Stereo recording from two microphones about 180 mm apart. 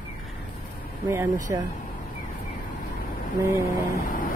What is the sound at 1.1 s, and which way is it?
Speech, 15° right (ahead or behind).